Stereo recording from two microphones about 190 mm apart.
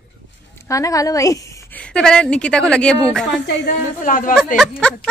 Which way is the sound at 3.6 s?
45° left (ahead or behind).